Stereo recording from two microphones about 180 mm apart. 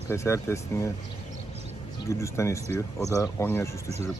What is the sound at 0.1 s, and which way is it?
Speech, 15° left (ahead or behind).